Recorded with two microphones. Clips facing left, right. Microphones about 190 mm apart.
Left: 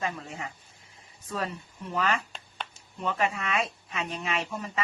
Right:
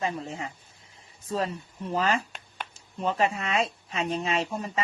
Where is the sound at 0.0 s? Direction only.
30° right (ahead or behind).